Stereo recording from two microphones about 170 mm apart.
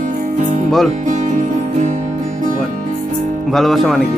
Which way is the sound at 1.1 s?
45° right (ahead or behind).